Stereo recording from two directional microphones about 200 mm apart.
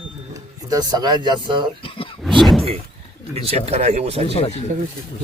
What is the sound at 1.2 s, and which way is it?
Speech, 25° right (ahead or behind).